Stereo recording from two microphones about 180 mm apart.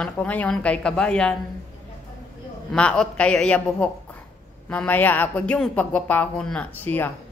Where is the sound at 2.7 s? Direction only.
5° left (ahead or behind).